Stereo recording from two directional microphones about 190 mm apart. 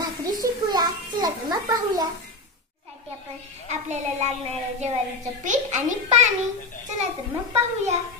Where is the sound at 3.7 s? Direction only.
35° right (ahead or behind).